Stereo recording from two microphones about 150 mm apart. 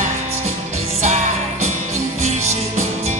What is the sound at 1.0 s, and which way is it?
Music, 50° right (ahead or behind).